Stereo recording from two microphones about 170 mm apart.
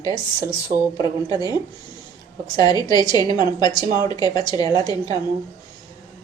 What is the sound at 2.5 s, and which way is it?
A woman's voice, 25° left (ahead or behind).